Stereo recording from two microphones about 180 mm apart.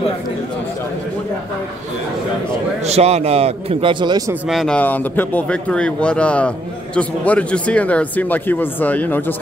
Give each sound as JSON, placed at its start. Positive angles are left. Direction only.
{"t": 2.9, "sound": "a man's voice", "side_deg": -35}
{"t": 4.5, "sound": "speech", "side_deg": 0}